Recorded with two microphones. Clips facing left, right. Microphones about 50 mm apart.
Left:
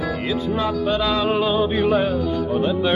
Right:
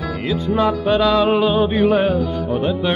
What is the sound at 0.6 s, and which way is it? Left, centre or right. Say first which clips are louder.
Music: right 7 dB; right.